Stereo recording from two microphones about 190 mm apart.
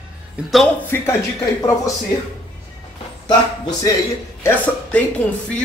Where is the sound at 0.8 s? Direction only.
10° left (ahead or behind).